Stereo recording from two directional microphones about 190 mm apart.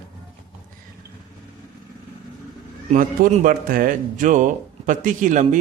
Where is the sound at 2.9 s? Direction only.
45° right (ahead or behind).